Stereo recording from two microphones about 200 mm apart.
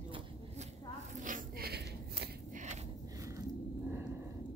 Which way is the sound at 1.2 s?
45° right (ahead or behind).